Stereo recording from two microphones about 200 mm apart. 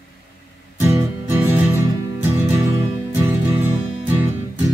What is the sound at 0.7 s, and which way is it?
Music, 10° right (ahead or behind).